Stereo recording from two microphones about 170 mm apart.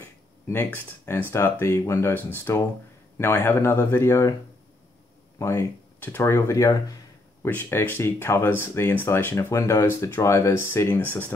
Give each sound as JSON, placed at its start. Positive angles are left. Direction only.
{"t": 0.0, "sound": "speech", "side_deg": 15}
{"t": 5.4, "sound": "speech", "side_deg": 15}